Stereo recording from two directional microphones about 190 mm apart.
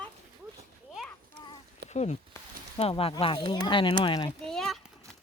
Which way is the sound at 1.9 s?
35° left (ahead or behind).